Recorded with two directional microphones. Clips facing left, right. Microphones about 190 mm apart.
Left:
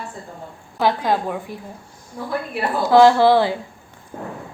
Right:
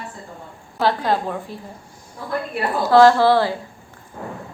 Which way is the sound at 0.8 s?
15° left (ahead or behind).